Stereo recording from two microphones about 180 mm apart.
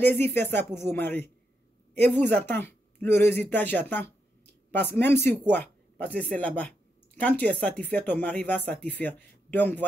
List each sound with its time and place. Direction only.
0.0 s speech: 10° left (ahead or behind)